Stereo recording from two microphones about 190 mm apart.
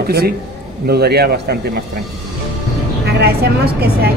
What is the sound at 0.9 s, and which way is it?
Speech, 55° right (ahead or behind).